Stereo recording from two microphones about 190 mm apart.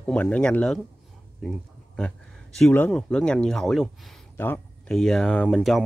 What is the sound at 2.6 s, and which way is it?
Speech, 5° left (ahead or behind).